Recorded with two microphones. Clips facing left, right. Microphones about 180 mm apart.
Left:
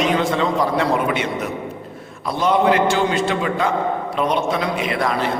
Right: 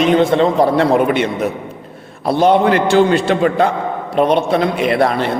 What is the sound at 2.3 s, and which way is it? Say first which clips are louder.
A man's voice: right 5 dB; 65° right (ahead or behind).